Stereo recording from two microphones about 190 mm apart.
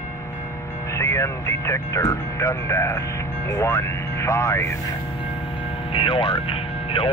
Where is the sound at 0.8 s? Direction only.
15° left (ahead or behind).